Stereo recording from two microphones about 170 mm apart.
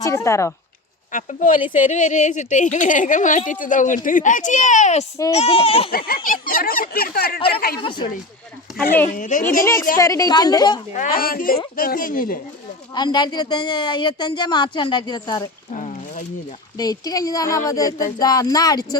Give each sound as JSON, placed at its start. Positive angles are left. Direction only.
{"t": 0.0, "sound": "speech", "side_deg": 15}
{"t": 1.1, "sound": "speech", "side_deg": 50}
{"t": 5.9, "sound": "speech", "side_deg": 60}
{"t": 7.8, "sound": "speech", "side_deg": 30}
{"t": 9.1, "sound": "speech", "side_deg": 50}
{"t": 10.0, "sound": "speech", "side_deg": 20}
{"t": 10.9, "sound": "speech", "side_deg": 55}
{"t": 12.9, "sound": "speech", "side_deg": 25}
{"t": 15.7, "sound": "a sound", "side_deg": 45}
{"t": 16.7, "sound": "speech", "side_deg": 20}